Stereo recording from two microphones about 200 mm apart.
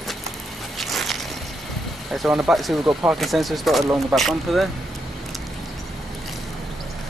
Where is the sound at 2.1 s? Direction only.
5° right (ahead or behind).